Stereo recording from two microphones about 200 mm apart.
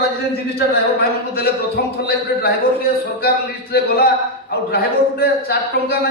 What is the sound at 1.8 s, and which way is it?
Speech, 50° left (ahead or behind).